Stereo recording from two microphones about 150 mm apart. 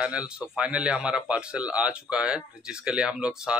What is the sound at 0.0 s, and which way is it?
Speech, 5° right (ahead or behind).